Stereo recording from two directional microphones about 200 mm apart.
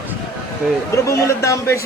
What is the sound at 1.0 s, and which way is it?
Speech, 15° left (ahead or behind).